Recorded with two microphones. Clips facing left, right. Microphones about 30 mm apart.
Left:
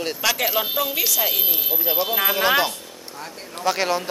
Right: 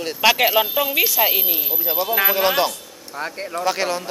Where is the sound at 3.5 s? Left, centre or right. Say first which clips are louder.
Left 1 dB; centre.